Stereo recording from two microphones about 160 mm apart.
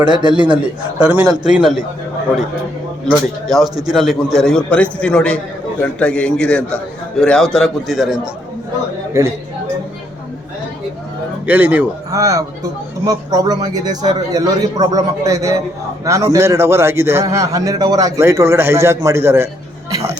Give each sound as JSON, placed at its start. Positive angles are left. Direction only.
{"t": 0.0, "sound": "a man's voice", "side_deg": -30}
{"t": 1.5, "sound": "a man's voice", "side_deg": -5}
{"t": 3.4, "sound": "a man's voice", "side_deg": 0}
{"t": 9.2, "sound": "a man's voice", "side_deg": -20}
{"t": 11.4, "sound": "a man's voice", "side_deg": -10}
{"t": 12.1, "sound": "a man's voice", "side_deg": -20}
{"t": 19.9, "sound": "a sound", "side_deg": -20}